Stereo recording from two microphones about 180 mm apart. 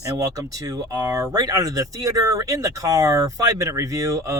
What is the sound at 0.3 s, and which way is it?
Speech, 20° right (ahead or behind).